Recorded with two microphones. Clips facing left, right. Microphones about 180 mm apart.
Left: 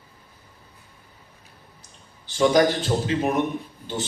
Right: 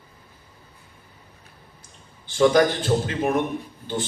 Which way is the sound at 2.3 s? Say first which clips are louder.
Right 1 dB; 50° right (ahead or behind).